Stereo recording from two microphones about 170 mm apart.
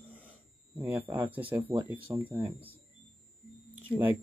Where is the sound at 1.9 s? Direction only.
10° right (ahead or behind).